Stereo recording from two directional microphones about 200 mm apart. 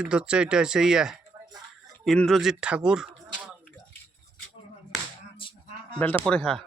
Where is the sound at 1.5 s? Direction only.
20° right (ahead or behind).